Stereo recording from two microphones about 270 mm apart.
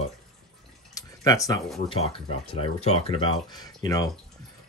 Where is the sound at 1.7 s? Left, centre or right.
Left.